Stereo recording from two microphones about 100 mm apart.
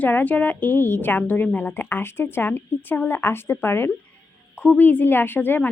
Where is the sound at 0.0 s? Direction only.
15° left (ahead or behind).